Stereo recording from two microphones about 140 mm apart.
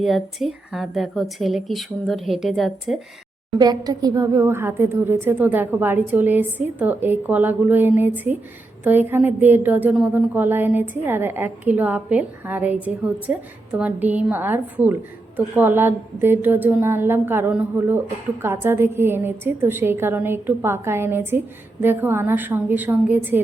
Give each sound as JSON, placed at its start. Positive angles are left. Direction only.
{"t": 0.0, "sound": "speech", "side_deg": 0}
{"t": 3.6, "sound": "a woman's voice", "side_deg": -30}